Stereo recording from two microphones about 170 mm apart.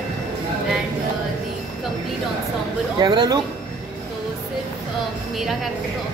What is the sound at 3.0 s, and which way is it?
Speech, 25° right (ahead or behind).